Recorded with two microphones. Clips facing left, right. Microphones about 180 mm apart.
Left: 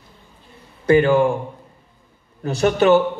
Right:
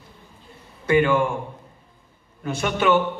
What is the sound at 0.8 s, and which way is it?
Speech, 35° left (ahead or behind).